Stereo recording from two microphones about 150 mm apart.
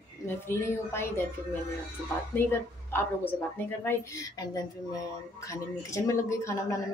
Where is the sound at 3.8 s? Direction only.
20° left (ahead or behind).